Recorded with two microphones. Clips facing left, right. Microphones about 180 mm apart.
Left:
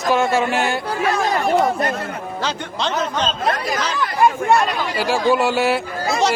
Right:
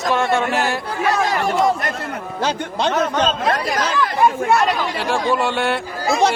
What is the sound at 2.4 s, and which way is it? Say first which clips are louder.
Speech: right 5 dB; 55° right (ahead or behind).